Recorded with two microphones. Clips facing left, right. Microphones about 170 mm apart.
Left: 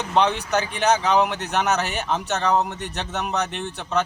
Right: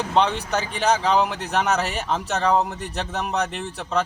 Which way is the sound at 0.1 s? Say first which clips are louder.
Left 2 dB; centre (ahead or behind).